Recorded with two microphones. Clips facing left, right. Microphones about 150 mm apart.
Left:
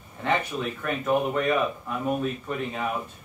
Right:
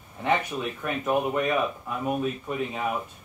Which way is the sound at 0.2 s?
15° right (ahead or behind).